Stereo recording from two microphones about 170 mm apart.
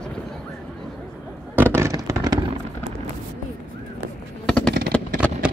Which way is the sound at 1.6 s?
15° right (ahead or behind).